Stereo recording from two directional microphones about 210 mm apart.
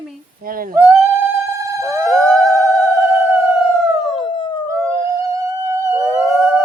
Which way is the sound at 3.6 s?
Centre (ahead or behind).